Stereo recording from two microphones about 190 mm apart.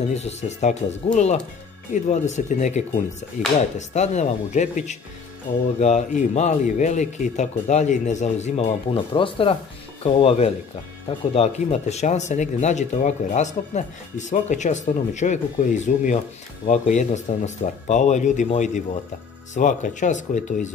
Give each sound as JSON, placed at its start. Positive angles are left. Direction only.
{"t": 0.1, "sound": "speech", "side_deg": 35}